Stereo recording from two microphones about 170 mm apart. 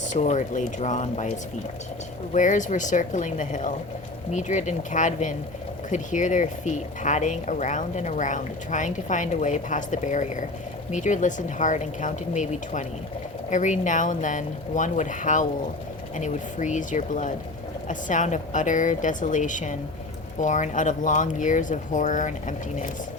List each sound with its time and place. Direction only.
0.0 s speech: 45° left (ahead or behind)
2.3 s speech: 45° left (ahead or behind)